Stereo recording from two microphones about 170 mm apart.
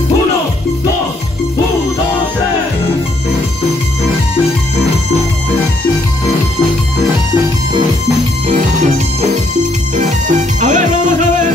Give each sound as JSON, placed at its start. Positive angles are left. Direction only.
{"t": 8.5, "sound": "music", "side_deg": -40}